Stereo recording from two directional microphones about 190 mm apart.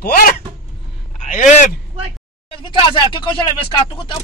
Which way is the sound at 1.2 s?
40° left (ahead or behind).